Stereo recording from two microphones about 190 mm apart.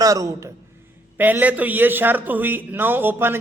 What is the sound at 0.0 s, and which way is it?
A man's voice, 15° right (ahead or behind).